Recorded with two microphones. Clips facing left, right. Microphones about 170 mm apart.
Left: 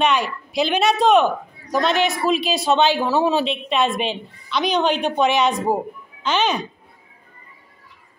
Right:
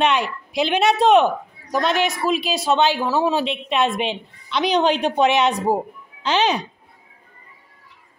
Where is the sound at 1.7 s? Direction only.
10° right (ahead or behind).